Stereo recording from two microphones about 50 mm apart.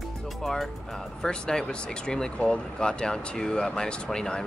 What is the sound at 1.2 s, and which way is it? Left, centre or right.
Speech, centre.